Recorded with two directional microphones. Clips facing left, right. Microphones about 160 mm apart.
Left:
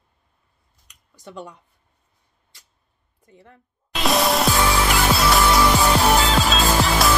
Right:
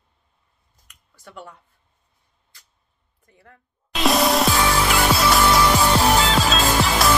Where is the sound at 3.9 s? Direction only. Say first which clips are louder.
Right 1 dB; centre (ahead or behind).